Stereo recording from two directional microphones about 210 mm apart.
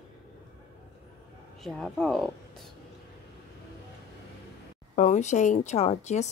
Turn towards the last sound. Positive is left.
turn(degrees=35)  # may be behind; listen again after turning